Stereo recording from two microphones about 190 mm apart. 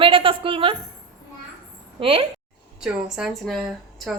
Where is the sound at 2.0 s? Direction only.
30° right (ahead or behind).